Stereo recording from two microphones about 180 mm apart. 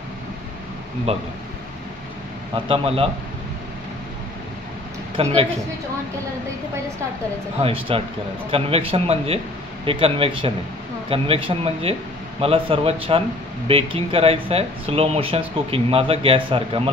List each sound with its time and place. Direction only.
1.1 s speech: 35° right (ahead or behind)
2.5 s speech: 30° right (ahead or behind)
5.1 s speech: 35° right (ahead or behind)
7.9 s speech: 30° right (ahead or behind)